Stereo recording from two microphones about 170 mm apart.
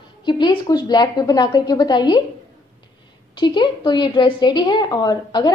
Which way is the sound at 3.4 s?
25° left (ahead or behind).